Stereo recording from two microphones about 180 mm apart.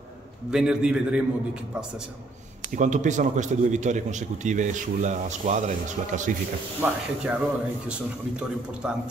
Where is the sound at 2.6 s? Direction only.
45° right (ahead or behind).